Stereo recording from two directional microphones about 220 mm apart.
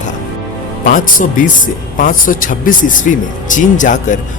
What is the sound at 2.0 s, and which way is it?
A man's voice, 40° left (ahead or behind).